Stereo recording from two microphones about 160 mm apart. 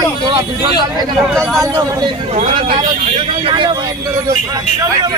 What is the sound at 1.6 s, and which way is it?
Speech, 20° right (ahead or behind).